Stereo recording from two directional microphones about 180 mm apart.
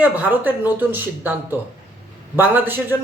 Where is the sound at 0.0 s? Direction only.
10° right (ahead or behind).